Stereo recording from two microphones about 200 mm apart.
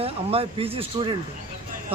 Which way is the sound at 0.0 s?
30° right (ahead or behind).